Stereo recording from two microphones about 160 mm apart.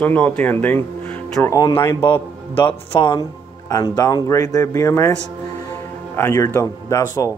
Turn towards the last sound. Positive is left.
turn(degrees=20)  # may be behind; listen again after turning